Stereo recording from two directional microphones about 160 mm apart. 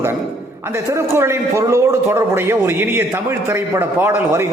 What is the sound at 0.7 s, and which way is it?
A man's voice, 15° right (ahead or behind).